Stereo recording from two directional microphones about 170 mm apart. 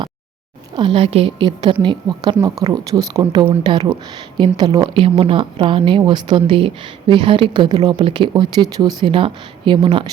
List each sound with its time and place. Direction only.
0.8 s a woman's voice: 30° right (ahead or behind)
5.0 s a woman's voice: 35° right (ahead or behind)